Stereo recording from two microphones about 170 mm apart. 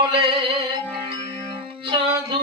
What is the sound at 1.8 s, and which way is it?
Music, 30° right (ahead or behind).